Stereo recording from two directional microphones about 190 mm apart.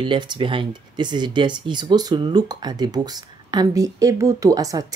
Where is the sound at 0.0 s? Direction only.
25° right (ahead or behind).